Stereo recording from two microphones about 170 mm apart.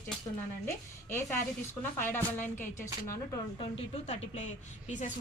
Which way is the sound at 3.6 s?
40° left (ahead or behind).